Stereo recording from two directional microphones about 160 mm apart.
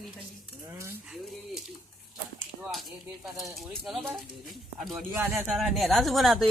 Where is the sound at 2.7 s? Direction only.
Centre (ahead or behind).